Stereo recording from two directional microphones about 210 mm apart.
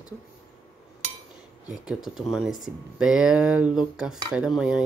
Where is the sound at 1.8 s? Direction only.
Centre (ahead or behind).